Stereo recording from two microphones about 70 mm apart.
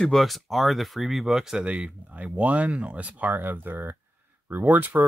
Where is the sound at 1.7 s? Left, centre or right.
Centre.